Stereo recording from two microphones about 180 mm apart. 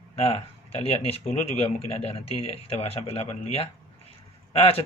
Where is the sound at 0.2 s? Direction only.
35° left (ahead or behind).